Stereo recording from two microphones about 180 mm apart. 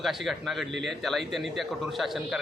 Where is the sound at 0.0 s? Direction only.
Centre (ahead or behind).